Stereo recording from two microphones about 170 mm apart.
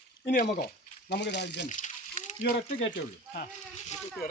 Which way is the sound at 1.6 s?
45° left (ahead or behind).